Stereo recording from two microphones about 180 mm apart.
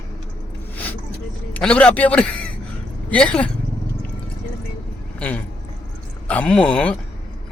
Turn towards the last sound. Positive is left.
turn(degrees=5)  # may be behind; listen again after turning